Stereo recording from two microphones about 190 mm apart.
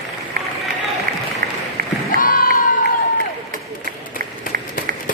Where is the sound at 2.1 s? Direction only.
45° left (ahead or behind).